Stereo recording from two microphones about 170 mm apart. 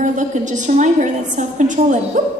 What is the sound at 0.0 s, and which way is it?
A woman's voice, 45° right (ahead or behind).